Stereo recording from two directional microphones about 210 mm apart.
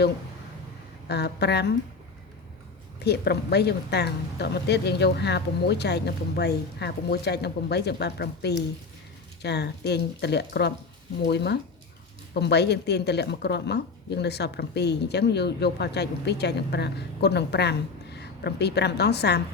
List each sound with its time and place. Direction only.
1.0 s speech: 50° left (ahead or behind)
3.0 s speech: 50° left (ahead or behind)